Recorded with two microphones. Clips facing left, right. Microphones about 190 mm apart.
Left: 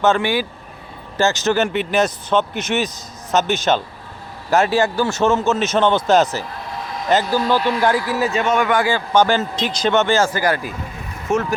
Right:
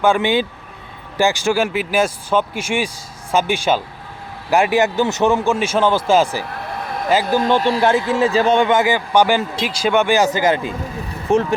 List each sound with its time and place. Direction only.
0.0 s a man's voice: 15° right (ahead or behind)
6.7 s a sound: 60° right (ahead or behind)
7.7 s a man's voice: 25° right (ahead or behind)
11.3 s speech: 35° right (ahead or behind)